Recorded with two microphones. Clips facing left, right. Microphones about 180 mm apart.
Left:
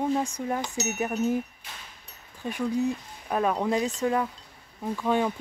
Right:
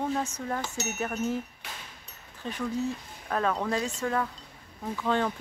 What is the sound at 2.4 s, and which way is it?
Speech, 15° left (ahead or behind).